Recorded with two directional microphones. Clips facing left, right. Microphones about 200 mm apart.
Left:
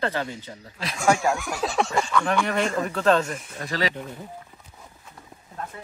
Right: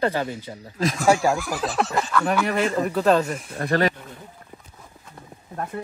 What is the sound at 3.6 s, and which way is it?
Speech, 55° right (ahead or behind).